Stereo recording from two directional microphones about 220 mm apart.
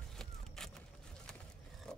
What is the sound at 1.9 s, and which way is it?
Wood, 5° left (ahead or behind).